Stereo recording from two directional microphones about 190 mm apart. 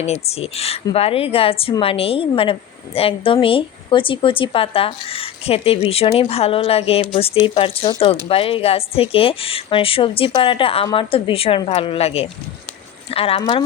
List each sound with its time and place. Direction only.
0.0 s a woman's voice: 35° left (ahead or behind)